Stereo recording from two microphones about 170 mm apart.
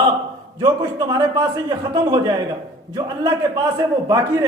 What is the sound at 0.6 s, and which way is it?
Speech, 25° right (ahead or behind).